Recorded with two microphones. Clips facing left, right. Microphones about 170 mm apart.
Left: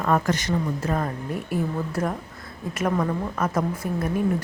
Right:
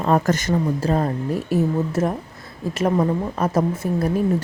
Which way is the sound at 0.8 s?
30° right (ahead or behind).